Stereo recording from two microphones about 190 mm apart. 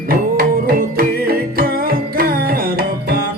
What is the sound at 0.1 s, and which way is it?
Music, 50° right (ahead or behind).